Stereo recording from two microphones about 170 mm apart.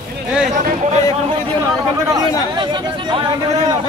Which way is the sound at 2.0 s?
25° right (ahead or behind).